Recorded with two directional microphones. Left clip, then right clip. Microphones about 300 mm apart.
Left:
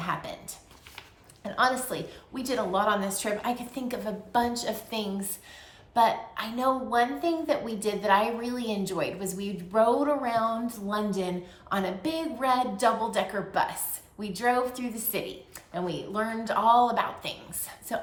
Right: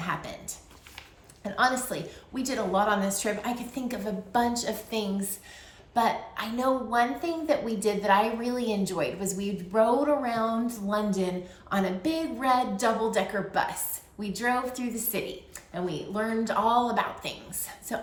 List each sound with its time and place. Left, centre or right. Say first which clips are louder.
0.0 s speech: left 1 dB; centre
1.5 s a woman's voice: even; centre